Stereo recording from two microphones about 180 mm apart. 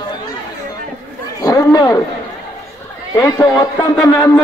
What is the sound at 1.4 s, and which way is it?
Speech, 20° left (ahead or behind).